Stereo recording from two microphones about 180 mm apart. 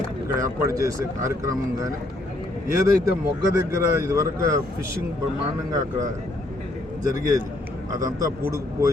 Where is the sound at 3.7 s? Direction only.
15° right (ahead or behind).